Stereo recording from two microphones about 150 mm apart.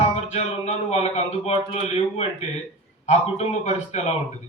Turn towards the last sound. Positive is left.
turn(degrees=45)  # may be behind; listen again after turning